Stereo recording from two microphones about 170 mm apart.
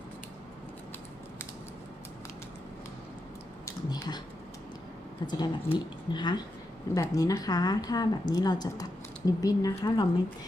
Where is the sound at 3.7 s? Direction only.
20° left (ahead or behind).